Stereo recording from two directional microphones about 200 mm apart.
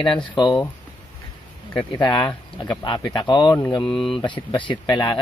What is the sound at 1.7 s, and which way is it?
Speech, 20° left (ahead or behind).